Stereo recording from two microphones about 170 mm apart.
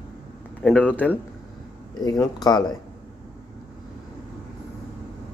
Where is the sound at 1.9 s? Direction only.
25° left (ahead or behind).